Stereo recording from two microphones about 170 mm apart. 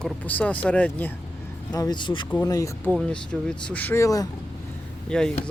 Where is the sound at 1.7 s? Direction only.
25° left (ahead or behind).